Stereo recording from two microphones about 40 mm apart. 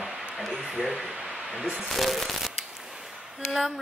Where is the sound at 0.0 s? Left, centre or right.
Centre.